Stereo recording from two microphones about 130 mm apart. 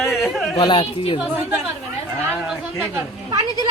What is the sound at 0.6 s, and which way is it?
Speech, 40° left (ahead or behind).